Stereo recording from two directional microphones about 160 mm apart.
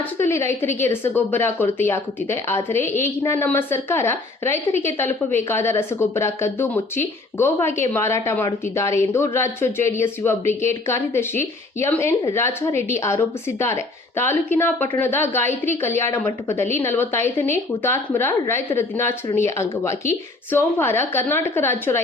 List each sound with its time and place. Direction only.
0.0 s a woman's voice: 15° left (ahead or behind)